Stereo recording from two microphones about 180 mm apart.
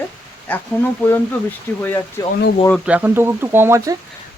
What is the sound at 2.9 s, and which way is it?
Speech, 10° right (ahead or behind).